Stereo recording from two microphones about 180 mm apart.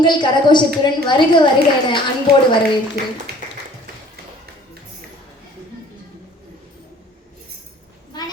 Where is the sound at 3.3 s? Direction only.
60° right (ahead or behind).